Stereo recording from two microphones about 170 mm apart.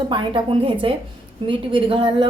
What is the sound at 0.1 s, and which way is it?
A woman's voice, 30° right (ahead or behind).